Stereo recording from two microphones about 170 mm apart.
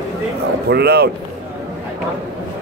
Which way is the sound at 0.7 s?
70° right (ahead or behind).